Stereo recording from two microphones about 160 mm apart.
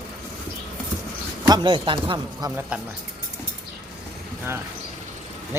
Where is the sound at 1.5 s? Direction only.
30° right (ahead or behind).